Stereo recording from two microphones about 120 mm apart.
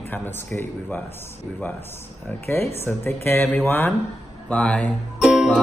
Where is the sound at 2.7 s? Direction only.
20° left (ahead or behind).